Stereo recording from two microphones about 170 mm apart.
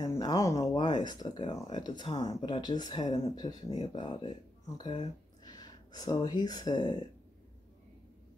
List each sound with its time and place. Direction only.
0.0 s a sound: 25° left (ahead or behind)
0.7 s speech: 30° left (ahead or behind)
1.4 s speech: 40° left (ahead or behind)
1.8 s speech: 25° left (ahead or behind)